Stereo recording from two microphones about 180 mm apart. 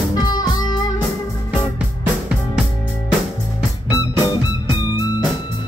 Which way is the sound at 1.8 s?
5° right (ahead or behind).